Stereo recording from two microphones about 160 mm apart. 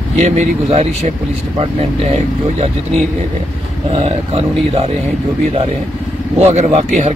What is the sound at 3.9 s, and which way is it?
Speech, 35° right (ahead or behind).